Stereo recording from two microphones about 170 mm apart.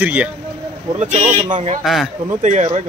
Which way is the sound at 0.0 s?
10° right (ahead or behind).